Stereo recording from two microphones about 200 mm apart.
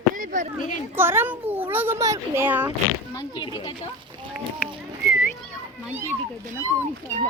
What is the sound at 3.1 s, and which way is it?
Speech, 20° left (ahead or behind).